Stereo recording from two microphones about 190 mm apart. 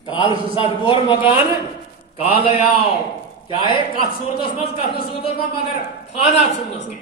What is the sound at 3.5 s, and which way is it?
A man's voice, 25° left (ahead or behind).